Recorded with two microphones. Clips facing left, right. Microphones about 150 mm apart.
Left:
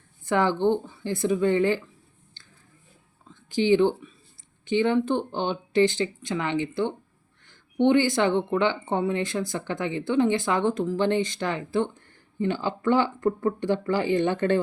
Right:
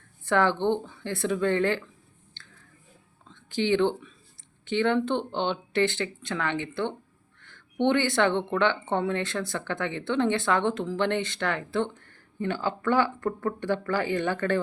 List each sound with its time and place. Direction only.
0.3 s speech: 15° left (ahead or behind)
3.2 s speech: 15° left (ahead or behind)
7.4 s a sound: 15° left (ahead or behind)
8.0 s speech: 15° left (ahead or behind)